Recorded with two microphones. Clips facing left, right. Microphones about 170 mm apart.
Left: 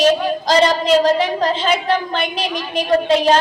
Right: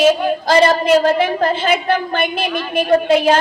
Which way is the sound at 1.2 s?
55° right (ahead or behind).